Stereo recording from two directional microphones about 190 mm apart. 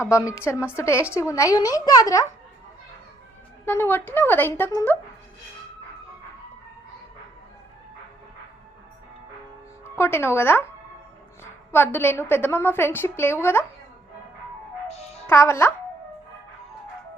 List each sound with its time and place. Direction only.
0.0 s a woman's voice: 15° left (ahead or behind)
3.7 s a woman's voice: 10° left (ahead or behind)
10.0 s a woman's voice: 15° left (ahead or behind)
11.7 s a woman's voice: 10° left (ahead or behind)
14.8 s music: 35° left (ahead or behind)
15.3 s a woman's voice: 15° left (ahead or behind)